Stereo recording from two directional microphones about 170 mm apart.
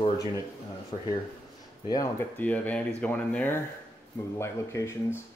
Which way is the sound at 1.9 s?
20° left (ahead or behind).